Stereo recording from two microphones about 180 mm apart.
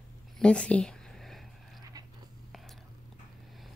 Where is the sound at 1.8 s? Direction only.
20° right (ahead or behind).